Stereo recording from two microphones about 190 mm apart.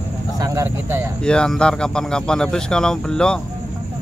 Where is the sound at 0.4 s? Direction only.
15° right (ahead or behind).